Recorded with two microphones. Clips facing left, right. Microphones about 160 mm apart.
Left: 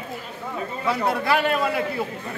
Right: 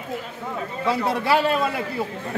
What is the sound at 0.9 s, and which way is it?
Speech, 30° right (ahead or behind).